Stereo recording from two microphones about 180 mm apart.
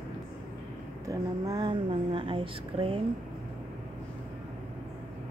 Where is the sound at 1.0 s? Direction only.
20° right (ahead or behind).